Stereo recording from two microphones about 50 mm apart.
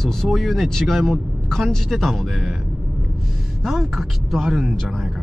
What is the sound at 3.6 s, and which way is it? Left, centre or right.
Speech, centre.